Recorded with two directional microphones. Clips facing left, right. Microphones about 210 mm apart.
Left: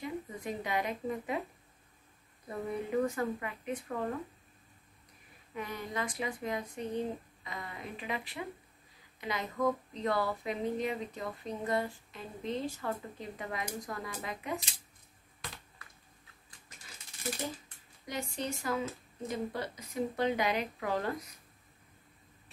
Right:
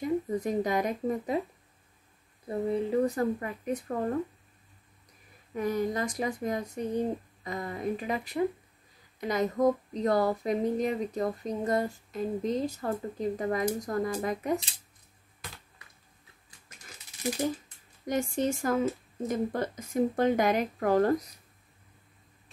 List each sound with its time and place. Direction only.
0.0 s speech: 40° right (ahead or behind)
2.4 s speech: 30° right (ahead or behind)
5.5 s speech: 40° right (ahead or behind)
18.0 s speech: 50° right (ahead or behind)